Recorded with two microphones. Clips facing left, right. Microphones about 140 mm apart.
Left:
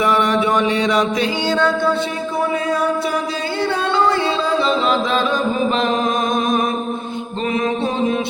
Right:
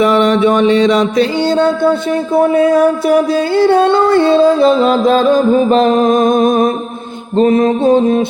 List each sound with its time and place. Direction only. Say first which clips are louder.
0.0 s music: right 7 dB; 25° right (ahead or behind)
2.3 s music: right 11 dB; 50° right (ahead or behind)